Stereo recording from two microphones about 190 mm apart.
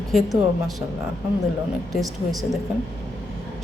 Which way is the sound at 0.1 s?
Centre (ahead or behind).